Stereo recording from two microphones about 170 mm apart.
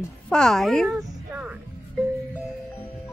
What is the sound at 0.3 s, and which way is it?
Speech, 5° left (ahead or behind).